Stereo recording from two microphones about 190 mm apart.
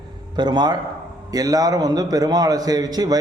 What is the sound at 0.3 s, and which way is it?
A man's voice, 20° right (ahead or behind).